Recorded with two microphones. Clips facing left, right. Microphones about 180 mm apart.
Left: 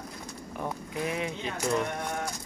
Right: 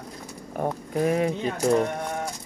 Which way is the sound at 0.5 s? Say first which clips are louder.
Right 8 dB; 45° right (ahead or behind).